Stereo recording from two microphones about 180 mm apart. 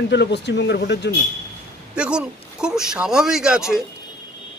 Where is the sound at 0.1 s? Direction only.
75° left (ahead or behind).